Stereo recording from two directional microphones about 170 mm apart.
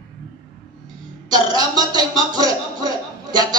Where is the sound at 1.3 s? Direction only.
25° right (ahead or behind).